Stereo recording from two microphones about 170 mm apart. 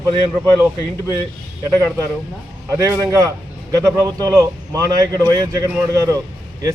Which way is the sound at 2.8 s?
15° right (ahead or behind).